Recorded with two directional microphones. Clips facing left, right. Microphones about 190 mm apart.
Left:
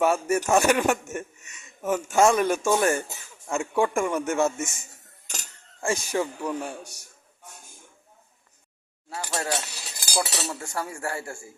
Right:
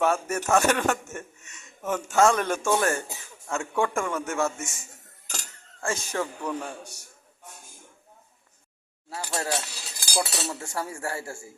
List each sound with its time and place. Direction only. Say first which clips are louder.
0.0 s a man's voice: left 3 dB; 10° left (ahead or behind)
5.8 s a man's voice: left 3 dB; 15° left (ahead or behind)
9.0 s cutlery: left 1 dB; 30° right (ahead or behind)
10.2 s speech: even; 30° right (ahead or behind)